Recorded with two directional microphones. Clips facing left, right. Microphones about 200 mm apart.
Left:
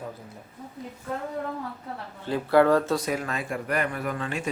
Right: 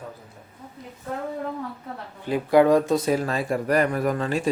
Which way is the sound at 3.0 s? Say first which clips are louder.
Right 6 dB; 30° right (ahead or behind).